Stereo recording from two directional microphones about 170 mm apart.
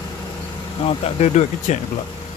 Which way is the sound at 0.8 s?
40° left (ahead or behind).